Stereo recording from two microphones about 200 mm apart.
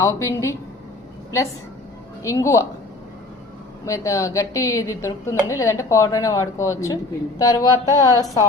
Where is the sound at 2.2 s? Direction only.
15° left (ahead or behind).